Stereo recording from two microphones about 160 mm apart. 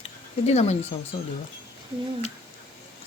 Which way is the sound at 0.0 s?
45° left (ahead or behind).